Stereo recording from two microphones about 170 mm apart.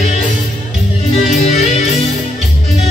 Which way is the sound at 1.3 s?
40° left (ahead or behind).